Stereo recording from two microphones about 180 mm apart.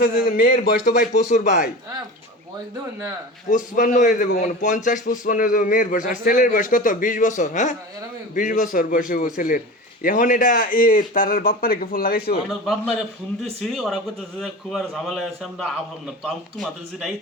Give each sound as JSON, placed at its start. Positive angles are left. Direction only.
{"t": 0.0, "sound": "a man's voice", "side_deg": 55}
{"t": 3.5, "sound": "a man's voice", "side_deg": 45}
{"t": 12.6, "sound": "a man's voice", "side_deg": 0}